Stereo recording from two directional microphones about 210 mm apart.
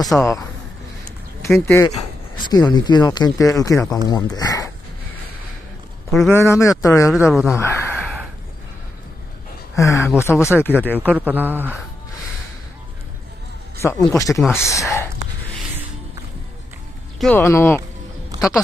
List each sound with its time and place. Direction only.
0.1 s speech: 5° left (ahead or behind)
1.5 s speech: 10° left (ahead or behind)
2.0 s speech: 20° left (ahead or behind)
6.2 s speech: 10° left (ahead or behind)
7.1 s speech: 5° right (ahead or behind)
7.4 s speech: 10° left (ahead or behind)
9.8 s speech: 15° left (ahead or behind)
11.1 s a man's voice: 10° right (ahead or behind)
13.7 s speech: 15° left (ahead or behind)
17.2 s speech: 10° left (ahead or behind)
18.3 s a sound: 15° right (ahead or behind)